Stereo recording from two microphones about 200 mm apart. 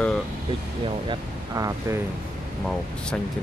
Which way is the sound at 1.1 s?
15° right (ahead or behind).